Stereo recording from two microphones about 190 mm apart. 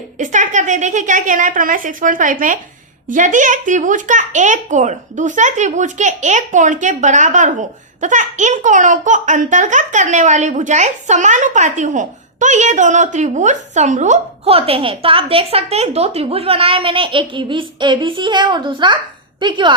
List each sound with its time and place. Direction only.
0.2 s a woman's voice: 40° right (ahead or behind); by 19.7 s 25° right (ahead or behind)